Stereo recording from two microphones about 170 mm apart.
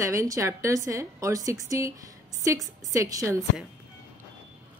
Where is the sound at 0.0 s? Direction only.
20° right (ahead or behind).